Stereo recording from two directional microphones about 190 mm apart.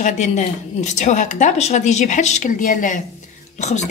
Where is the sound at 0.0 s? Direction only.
40° left (ahead or behind).